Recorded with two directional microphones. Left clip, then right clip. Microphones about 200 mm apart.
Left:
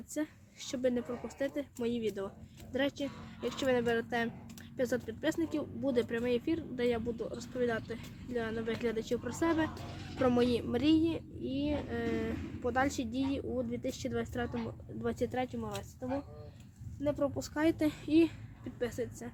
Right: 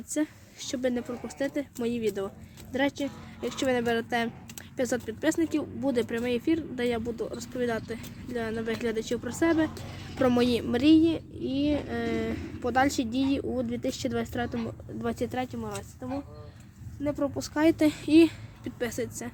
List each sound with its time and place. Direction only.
0.1 s a woman's voice: 25° right (ahead or behind)
15.0 s a woman's voice: 25° right (ahead or behind)